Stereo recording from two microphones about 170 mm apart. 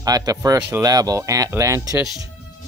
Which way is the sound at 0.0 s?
20° right (ahead or behind).